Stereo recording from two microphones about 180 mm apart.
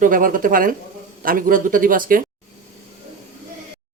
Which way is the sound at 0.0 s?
50° right (ahead or behind).